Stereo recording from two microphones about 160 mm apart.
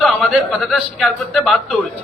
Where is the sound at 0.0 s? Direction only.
Centre (ahead or behind).